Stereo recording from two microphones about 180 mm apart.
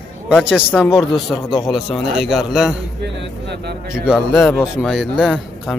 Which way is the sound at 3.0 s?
65° right (ahead or behind).